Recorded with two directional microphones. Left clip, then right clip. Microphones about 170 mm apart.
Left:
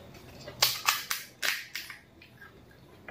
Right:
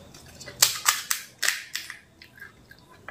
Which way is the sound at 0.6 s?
5° left (ahead or behind).